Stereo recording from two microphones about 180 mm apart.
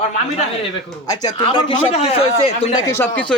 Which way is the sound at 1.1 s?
25° left (ahead or behind).